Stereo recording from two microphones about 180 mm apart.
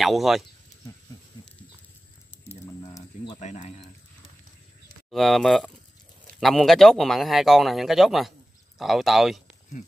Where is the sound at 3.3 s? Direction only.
40° left (ahead or behind).